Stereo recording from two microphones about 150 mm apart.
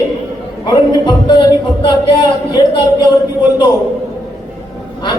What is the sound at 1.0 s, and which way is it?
A man's voice, 30° left (ahead or behind).